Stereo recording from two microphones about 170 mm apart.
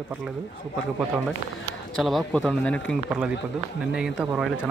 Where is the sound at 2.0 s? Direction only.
Centre (ahead or behind).